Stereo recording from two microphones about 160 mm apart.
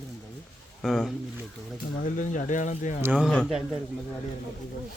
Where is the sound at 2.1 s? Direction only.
55° left (ahead or behind).